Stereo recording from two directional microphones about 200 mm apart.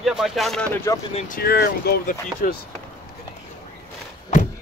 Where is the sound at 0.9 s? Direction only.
15° left (ahead or behind).